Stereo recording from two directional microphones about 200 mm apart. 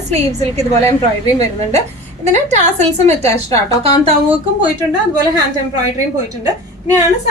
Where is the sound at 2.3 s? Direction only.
35° right (ahead or behind).